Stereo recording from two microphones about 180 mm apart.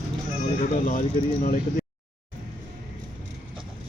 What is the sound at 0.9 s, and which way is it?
Speech, 50° left (ahead or behind).